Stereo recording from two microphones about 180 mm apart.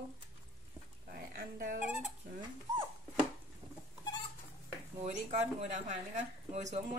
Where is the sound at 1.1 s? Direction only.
55° right (ahead or behind).